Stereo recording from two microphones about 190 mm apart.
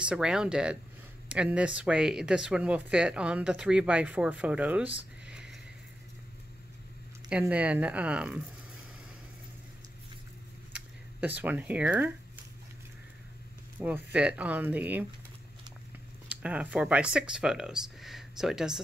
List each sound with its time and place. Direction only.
0.0 s speech: 5° right (ahead or behind)
5.2 s a sound: 5° right (ahead or behind)
7.2 s speech: 5° right (ahead or behind)
10.7 s a sound: 10° right (ahead or behind)
13.7 s speech: 10° right (ahead or behind)
16.3 s speech: 5° right (ahead or behind)